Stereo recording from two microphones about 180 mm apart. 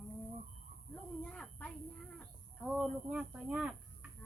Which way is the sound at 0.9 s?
5° left (ahead or behind).